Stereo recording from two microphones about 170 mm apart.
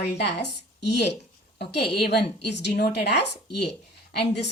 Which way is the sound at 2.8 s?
75° left (ahead or behind).